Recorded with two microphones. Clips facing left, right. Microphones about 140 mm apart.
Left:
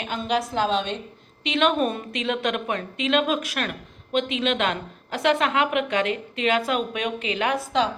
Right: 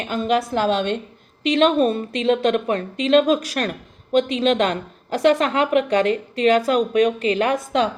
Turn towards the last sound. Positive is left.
turn(degrees=-45)  # may be behind; listen again after turning